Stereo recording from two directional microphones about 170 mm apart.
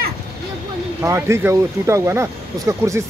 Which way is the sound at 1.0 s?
15° right (ahead or behind).